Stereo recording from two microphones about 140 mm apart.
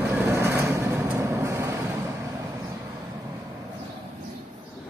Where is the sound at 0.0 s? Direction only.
15° right (ahead or behind).